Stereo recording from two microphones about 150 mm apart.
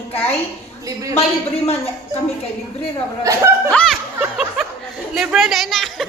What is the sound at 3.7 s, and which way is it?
A woman's voice, 5° left (ahead or behind).